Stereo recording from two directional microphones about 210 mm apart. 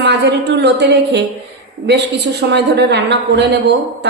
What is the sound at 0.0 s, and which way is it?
A woman's voice, 55° right (ahead or behind).